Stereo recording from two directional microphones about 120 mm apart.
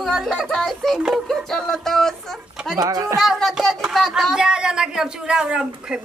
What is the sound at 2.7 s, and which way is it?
Speech, 30° right (ahead or behind).